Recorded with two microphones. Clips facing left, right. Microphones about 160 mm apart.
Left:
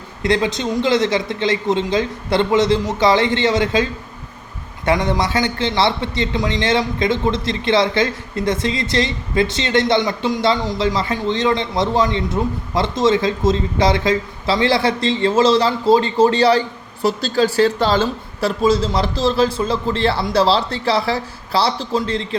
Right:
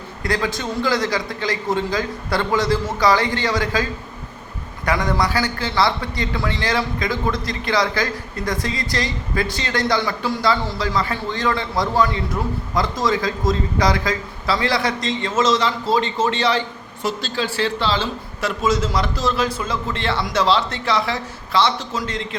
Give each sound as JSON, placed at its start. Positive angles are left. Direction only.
{"t": 0.2, "sound": "a man's voice", "side_deg": 25}
{"t": 4.9, "sound": "a man's voice", "side_deg": 25}
{"t": 18.3, "sound": "a man's voice", "side_deg": 30}